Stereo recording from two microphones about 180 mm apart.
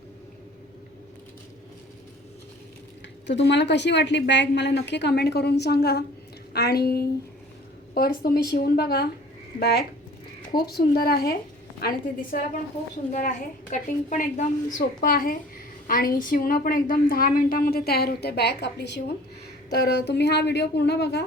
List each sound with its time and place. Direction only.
3.2 s a woman's voice: 75° left (ahead or behind); by 12.5 s 55° left (ahead or behind)
13.1 s a woman's voice: 45° left (ahead or behind); by 21.2 s 70° left (ahead or behind)